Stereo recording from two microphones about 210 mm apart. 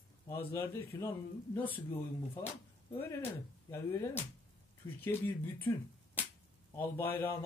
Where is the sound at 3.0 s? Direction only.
10° left (ahead or behind).